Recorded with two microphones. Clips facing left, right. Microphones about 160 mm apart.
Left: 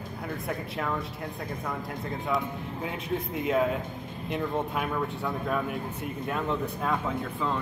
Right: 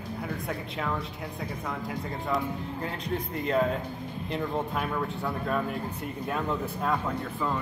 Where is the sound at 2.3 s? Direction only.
Centre (ahead or behind).